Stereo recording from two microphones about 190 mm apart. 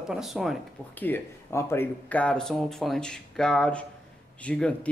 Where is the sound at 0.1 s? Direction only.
Centre (ahead or behind).